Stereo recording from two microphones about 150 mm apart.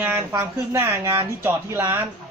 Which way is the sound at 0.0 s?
10° right (ahead or behind).